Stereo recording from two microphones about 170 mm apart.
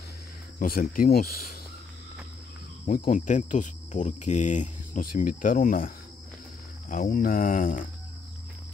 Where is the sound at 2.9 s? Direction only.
50° left (ahead or behind).